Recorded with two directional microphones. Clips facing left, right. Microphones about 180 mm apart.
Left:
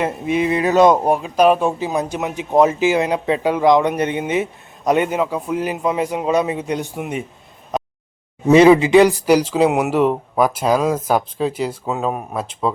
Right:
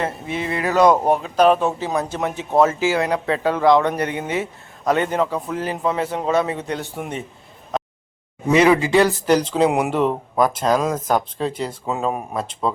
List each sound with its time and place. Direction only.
0.0 s speech: 15° left (ahead or behind)
1.0 s speech: 10° left (ahead or behind)
8.4 s speech: 25° left (ahead or behind); by 12.7 s 5° left (ahead or behind)